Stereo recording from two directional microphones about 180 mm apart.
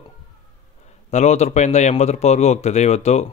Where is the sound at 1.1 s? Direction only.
40° left (ahead or behind).